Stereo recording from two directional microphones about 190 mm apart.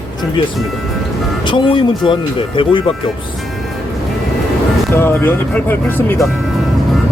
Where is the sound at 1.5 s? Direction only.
25° left (ahead or behind).